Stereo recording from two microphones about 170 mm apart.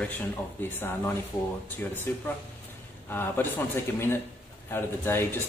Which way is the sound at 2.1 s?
10° left (ahead or behind).